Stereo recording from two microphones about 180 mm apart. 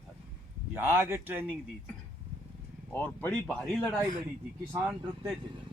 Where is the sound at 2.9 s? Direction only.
10° left (ahead or behind); by 5.3 s 5° right (ahead or behind).